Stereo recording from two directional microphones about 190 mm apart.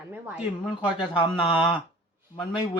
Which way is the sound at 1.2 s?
25° left (ahead or behind).